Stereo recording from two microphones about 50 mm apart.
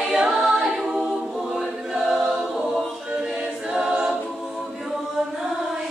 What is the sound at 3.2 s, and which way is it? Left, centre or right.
A capella, centre.